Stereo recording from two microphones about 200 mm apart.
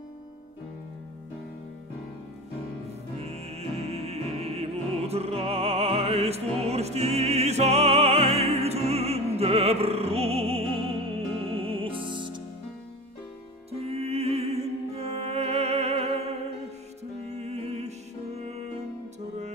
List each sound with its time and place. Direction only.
3.2 s music: 35° right (ahead or behind)
13.7 s music: 30° right (ahead or behind)